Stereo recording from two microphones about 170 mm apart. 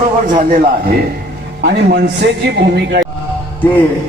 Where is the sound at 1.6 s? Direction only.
70° right (ahead or behind).